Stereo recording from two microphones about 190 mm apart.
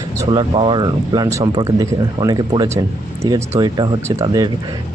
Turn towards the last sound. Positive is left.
turn(degrees=-20)  # may be behind; listen again after turning